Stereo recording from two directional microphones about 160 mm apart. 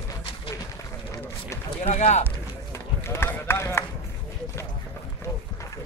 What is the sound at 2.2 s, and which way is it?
Run, 15° left (ahead or behind).